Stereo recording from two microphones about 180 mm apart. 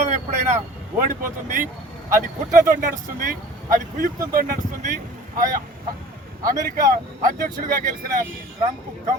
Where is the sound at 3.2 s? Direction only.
50° right (ahead or behind).